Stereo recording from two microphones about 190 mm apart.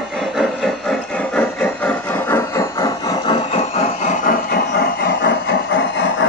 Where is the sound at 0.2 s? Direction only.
Centre (ahead or behind).